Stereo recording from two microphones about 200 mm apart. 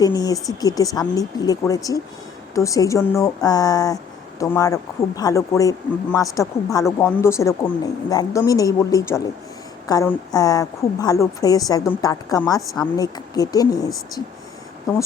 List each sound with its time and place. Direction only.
0.0 s speech: 20° left (ahead or behind)